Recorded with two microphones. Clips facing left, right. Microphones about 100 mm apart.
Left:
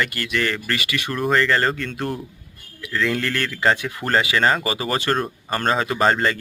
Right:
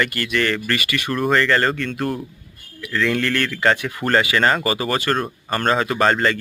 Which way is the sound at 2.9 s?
5° left (ahead or behind).